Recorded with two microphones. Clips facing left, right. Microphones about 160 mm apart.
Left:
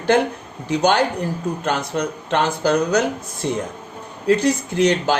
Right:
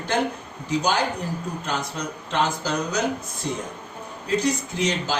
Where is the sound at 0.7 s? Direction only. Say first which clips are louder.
Left 6 dB; 65° left (ahead or behind).